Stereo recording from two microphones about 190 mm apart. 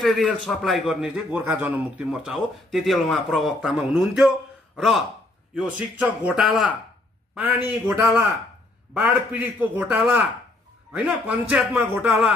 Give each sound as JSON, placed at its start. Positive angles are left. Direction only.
{"t": 0.0, "sound": "a man's voice", "side_deg": 0}